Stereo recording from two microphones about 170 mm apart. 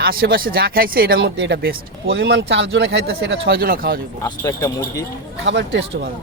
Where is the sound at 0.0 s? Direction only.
60° right (ahead or behind).